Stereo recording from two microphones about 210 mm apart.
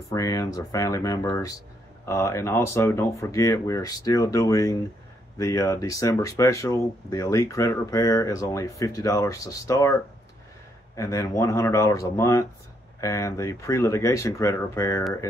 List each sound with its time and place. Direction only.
0.1 s speech: 15° left (ahead or behind)
11.0 s speech: 15° left (ahead or behind)